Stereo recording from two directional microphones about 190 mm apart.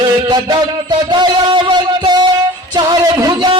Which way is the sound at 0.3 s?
25° right (ahead or behind).